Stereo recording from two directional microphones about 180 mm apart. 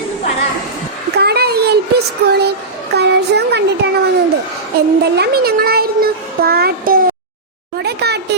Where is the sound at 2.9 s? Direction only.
65° right (ahead or behind).